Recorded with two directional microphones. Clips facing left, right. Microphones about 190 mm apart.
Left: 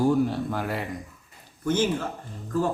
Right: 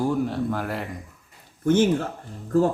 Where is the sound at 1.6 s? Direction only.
55° right (ahead or behind).